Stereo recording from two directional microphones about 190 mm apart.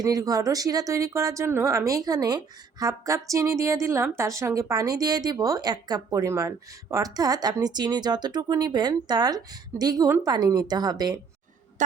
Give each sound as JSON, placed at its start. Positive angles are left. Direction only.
{"t": 0.0, "sound": "speech", "side_deg": -20}